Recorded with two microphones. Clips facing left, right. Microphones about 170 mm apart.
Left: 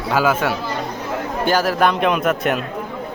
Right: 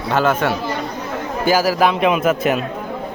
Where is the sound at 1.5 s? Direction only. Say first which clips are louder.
Right 2 dB; 5° right (ahead or behind).